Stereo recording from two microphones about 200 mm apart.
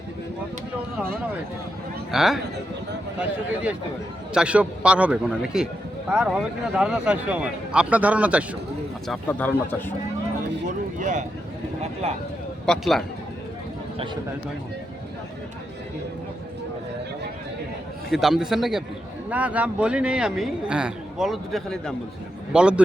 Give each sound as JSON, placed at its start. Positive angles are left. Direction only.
{"t": 2.1, "sound": "a man's voice", "side_deg": 0}
{"t": 9.0, "sound": "speech", "side_deg": 10}
{"t": 11.0, "sound": "speech", "side_deg": -40}
{"t": 12.6, "sound": "speech", "side_deg": 0}
{"t": 18.1, "sound": "speech", "side_deg": 0}